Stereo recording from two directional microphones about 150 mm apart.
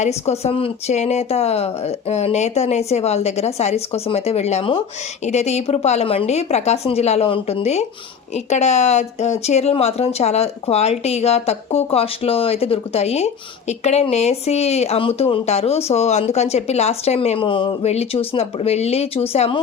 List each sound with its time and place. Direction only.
0.0 s a woman's voice: 45° left (ahead or behind)